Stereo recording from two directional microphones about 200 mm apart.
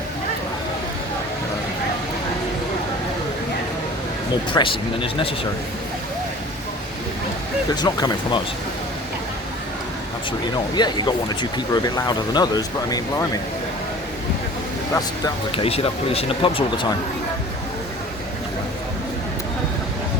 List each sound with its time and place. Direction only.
4.5 s speech: 25° left (ahead or behind)
7.8 s speech: 20° left (ahead or behind)
10.8 s speech: 20° left (ahead or behind)
15.5 s speech: 30° left (ahead or behind)